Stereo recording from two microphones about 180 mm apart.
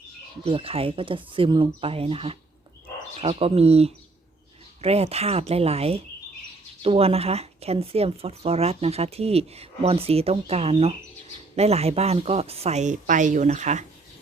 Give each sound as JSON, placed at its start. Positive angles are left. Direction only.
{"t": 0.4, "sound": "a woman's voice", "side_deg": -30}